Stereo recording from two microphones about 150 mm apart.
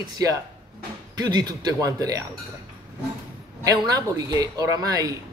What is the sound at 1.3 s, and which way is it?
Speech, 25° right (ahead or behind).